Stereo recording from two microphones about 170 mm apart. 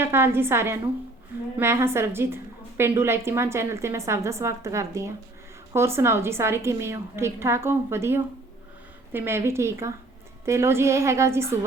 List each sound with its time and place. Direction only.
0.0 s a woman's voice: 15° right (ahead or behind)